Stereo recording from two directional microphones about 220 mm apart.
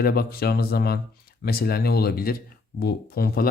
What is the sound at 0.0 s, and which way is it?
Speech, 45° left (ahead or behind).